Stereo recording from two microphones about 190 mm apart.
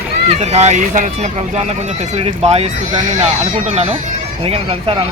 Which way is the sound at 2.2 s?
35° right (ahead or behind).